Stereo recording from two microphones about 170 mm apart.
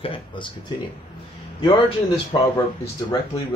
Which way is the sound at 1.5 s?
30° left (ahead or behind).